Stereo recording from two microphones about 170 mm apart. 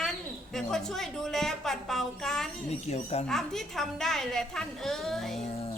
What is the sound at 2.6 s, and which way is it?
Speech, 40° left (ahead or behind).